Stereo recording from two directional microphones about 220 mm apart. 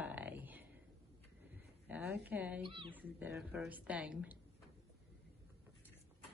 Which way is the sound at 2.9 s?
5° right (ahead or behind).